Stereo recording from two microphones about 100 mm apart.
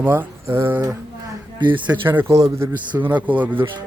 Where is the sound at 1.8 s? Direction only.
20° right (ahead or behind).